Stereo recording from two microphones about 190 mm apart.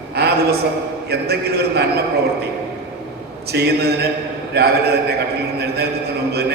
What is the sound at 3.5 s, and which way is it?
A man's voice, 60° right (ahead or behind).